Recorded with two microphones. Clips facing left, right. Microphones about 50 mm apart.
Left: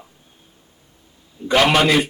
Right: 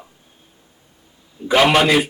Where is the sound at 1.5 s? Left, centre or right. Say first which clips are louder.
Right 1 dB; centre.